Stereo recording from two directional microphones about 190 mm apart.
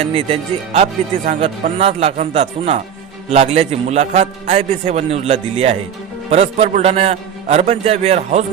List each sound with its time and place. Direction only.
0.1 s a man's voice: 30° right (ahead or behind)